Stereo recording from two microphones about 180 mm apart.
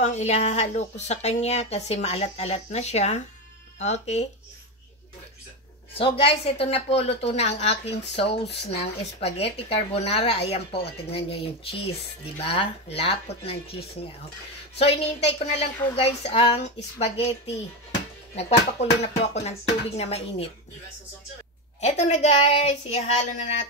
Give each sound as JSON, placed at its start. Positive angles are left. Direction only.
{"t": 0.0, "sound": "speech", "side_deg": 40}
{"t": 5.9, "sound": "speech", "side_deg": 30}
{"t": 18.3, "sound": "speech", "side_deg": 35}
{"t": 21.8, "sound": "speech", "side_deg": 40}